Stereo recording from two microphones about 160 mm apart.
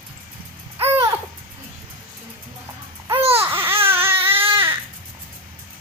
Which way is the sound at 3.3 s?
15° right (ahead or behind).